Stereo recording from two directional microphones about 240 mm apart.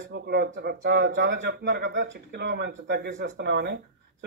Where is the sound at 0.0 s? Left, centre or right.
Right.